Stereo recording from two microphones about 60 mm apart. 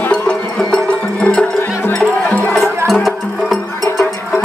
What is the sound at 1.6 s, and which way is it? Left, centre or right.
Music, left.